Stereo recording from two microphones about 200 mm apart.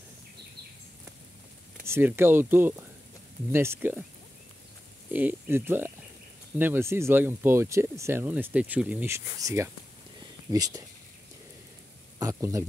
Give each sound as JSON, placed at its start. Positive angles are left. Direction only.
{"t": 1.9, "sound": "speech", "side_deg": -10}
{"t": 5.1, "sound": "speech", "side_deg": -10}
{"t": 12.2, "sound": "speech", "side_deg": -15}